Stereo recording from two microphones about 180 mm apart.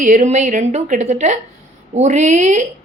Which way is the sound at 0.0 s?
45° right (ahead or behind).